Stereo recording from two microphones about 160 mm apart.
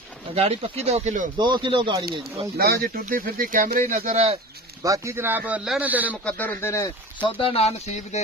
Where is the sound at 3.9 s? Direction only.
45° right (ahead or behind).